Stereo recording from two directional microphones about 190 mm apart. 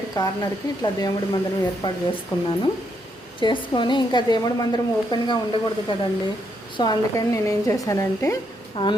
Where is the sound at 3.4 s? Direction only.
25° left (ahead or behind).